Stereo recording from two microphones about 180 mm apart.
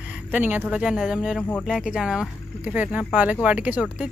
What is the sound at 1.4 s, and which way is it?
Speech, 10° left (ahead or behind).